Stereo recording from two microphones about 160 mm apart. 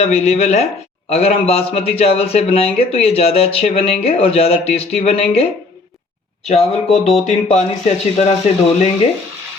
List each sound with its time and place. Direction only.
0.0 s speech: 40° left (ahead or behind)
6.5 s speech: 40° left (ahead or behind)